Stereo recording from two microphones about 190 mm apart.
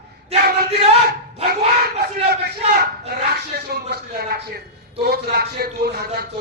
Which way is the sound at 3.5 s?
60° right (ahead or behind).